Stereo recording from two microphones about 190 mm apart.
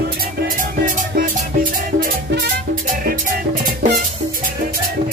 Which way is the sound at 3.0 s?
45° right (ahead or behind).